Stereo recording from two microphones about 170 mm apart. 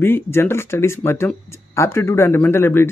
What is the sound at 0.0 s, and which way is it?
Speech, 15° left (ahead or behind).